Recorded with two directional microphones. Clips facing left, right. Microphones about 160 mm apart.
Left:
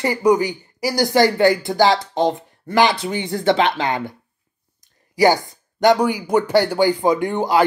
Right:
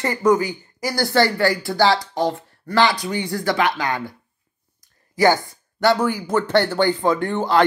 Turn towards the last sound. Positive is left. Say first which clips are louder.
# left 1 dB
turn(degrees=15)  # may be behind; listen again after turning